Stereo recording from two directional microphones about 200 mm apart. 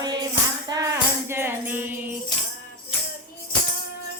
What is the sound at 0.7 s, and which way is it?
Music, 20° right (ahead or behind).